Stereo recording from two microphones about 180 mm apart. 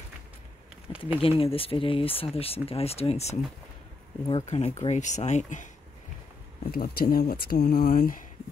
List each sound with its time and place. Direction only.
0.9 s a sound: 30° left (ahead or behind)
1.2 s speech: 30° left (ahead or behind)
6.7 s speech: 60° left (ahead or behind)